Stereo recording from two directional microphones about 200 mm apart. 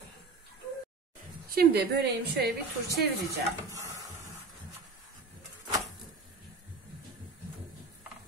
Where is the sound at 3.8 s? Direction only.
15° right (ahead or behind).